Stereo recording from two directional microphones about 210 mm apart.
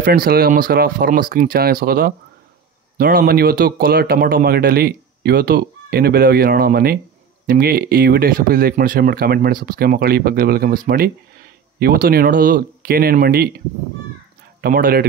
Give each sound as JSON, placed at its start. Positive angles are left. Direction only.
{"t": 0.0, "sound": "speech", "side_deg": -45}
{"t": 11.8, "sound": "speech", "side_deg": -45}
{"t": 14.6, "sound": "speech", "side_deg": -45}